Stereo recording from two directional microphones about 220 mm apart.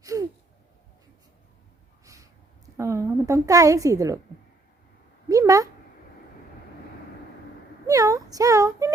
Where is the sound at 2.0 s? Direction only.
15° right (ahead or behind).